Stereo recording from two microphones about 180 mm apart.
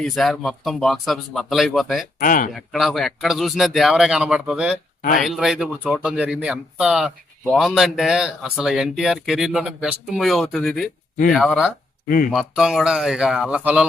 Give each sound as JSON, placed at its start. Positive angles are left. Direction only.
{"t": 0.0, "sound": "speech", "side_deg": 0}
{"t": 2.1, "sound": "speech", "side_deg": 50}
{"t": 2.5, "sound": "speech", "side_deg": 0}
{"t": 12.0, "sound": "speech", "side_deg": 50}
{"t": 12.3, "sound": "speech", "side_deg": 0}